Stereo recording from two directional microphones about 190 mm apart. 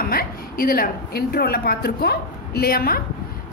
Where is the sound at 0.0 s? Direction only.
50° left (ahead or behind).